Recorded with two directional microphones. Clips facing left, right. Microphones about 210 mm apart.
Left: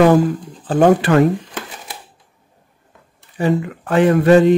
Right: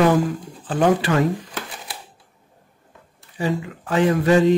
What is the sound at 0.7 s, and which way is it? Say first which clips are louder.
Speech: left 6 dB; 45° left (ahead or behind).